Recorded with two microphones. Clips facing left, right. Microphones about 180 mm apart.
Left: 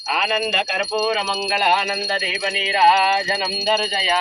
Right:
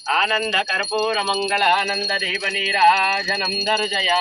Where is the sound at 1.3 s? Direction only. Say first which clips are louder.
Even; 5° left (ahead or behind).